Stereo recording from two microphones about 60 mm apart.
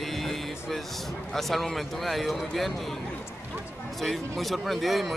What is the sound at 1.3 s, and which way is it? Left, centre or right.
Speech, centre.